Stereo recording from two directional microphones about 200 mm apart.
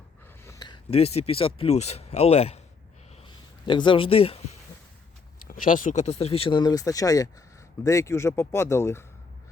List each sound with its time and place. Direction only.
0.4 s speech: 20° left (ahead or behind)
3.2 s a sound: 25° left (ahead or behind)
5.5 s speech: 40° left (ahead or behind); by 9.0 s 15° left (ahead or behind)